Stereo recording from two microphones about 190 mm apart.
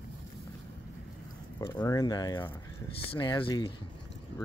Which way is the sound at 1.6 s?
20° left (ahead or behind).